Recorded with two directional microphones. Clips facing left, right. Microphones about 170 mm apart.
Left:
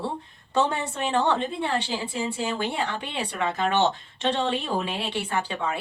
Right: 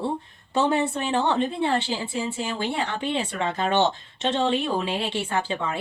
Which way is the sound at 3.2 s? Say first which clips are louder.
Right 1 dB; 25° right (ahead or behind).